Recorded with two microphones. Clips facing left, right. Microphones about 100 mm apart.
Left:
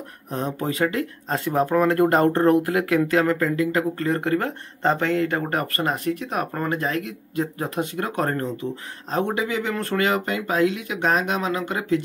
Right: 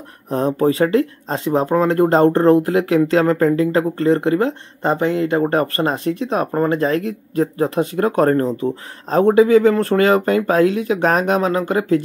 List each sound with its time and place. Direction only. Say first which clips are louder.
0.3 s speech: right 10 dB; 40° right (ahead or behind)